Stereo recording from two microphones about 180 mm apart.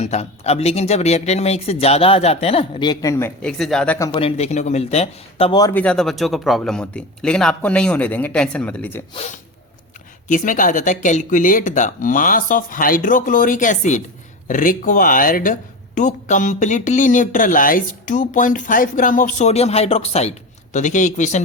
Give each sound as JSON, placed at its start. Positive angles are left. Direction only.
{"t": 0.0, "sound": "a man's voice", "side_deg": 35}
{"t": 4.1, "sound": "speech", "side_deg": 30}
{"t": 5.7, "sound": "a man's voice", "side_deg": 5}
{"t": 10.2, "sound": "speech", "side_deg": 45}